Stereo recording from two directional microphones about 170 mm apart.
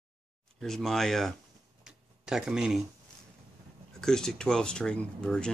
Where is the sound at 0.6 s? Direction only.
Centre (ahead or behind).